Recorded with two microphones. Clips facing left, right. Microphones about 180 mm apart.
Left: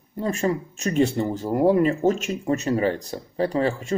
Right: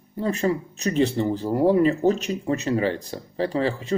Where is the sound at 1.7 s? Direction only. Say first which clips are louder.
Right 1 dB; 35° right (ahead or behind).